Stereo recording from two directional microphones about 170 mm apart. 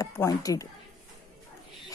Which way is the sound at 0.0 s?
20° left (ahead or behind).